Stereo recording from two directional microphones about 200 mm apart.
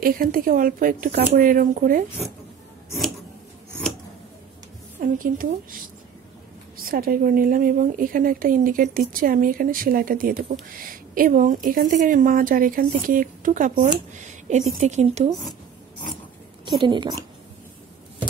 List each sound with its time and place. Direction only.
0.0 s a woman's voice: 45° right (ahead or behind)
5.0 s a woman's voice: 45° right (ahead or behind)
14.1 s a sound: 35° right (ahead or behind)
14.8 s speech: 35° right (ahead or behind)
16.8 s a woman's voice: 25° right (ahead or behind)